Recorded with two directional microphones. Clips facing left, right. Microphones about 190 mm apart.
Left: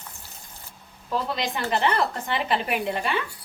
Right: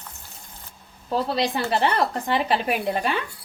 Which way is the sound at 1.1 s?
35° right (ahead or behind).